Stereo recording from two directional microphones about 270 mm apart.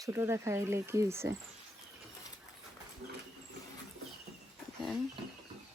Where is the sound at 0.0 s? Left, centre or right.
Centre.